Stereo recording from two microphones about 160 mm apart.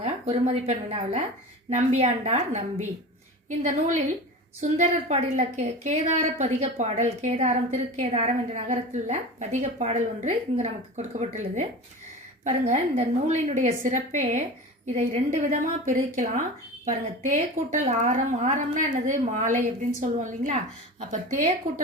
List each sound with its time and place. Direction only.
0.0 s a woman's voice: 45° right (ahead or behind)